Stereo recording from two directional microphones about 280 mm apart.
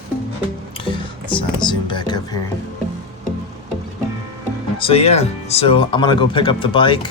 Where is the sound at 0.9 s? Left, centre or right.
Centre.